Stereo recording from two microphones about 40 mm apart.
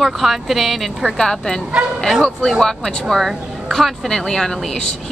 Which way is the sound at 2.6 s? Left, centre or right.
Centre.